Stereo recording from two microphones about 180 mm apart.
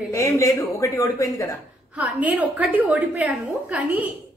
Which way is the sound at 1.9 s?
10° right (ahead or behind).